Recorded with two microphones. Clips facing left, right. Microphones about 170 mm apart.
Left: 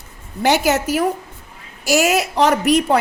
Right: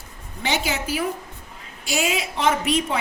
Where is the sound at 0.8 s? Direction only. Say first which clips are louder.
Left 7 dB; 40° left (ahead or behind).